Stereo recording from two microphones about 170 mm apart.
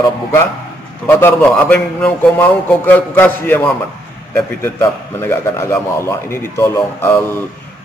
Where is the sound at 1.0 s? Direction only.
10° left (ahead or behind).